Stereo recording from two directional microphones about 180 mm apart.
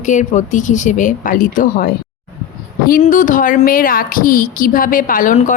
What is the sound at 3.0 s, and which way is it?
Speech, 45° left (ahead or behind).